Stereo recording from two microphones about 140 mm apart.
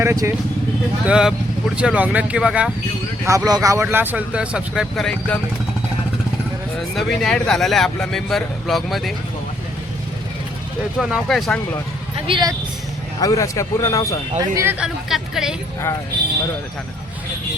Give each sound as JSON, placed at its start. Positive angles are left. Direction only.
{"t": 0.0, "sound": "speech", "side_deg": -20}
{"t": 1.0, "sound": "speech", "side_deg": -5}
{"t": 3.2, "sound": "speech", "side_deg": -25}
{"t": 6.7, "sound": "a man's voice", "side_deg": 5}
{"t": 11.0, "sound": "a man's voice", "side_deg": 0}
{"t": 12.3, "sound": "speech", "side_deg": -30}
{"t": 13.1, "sound": "a man's voice", "side_deg": 25}
{"t": 14.3, "sound": "speech", "side_deg": -20}
{"t": 14.8, "sound": "a man's voice", "side_deg": -5}